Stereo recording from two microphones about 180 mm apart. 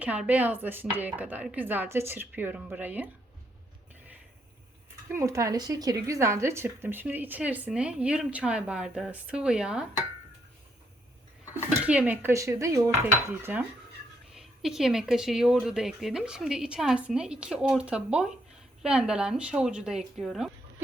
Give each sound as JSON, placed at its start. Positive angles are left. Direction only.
{"t": 0.0, "sound": "speech", "side_deg": -10}
{"t": 5.0, "sound": "speech", "side_deg": -15}
{"t": 11.9, "sound": "speech", "side_deg": -10}